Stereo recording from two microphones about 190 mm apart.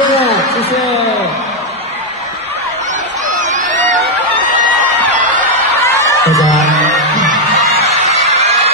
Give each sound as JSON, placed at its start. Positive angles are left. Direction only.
{"t": 3.3, "sound": "a sound", "side_deg": -40}
{"t": 5.3, "sound": "snicker", "side_deg": 15}
{"t": 7.2, "sound": "music", "side_deg": -40}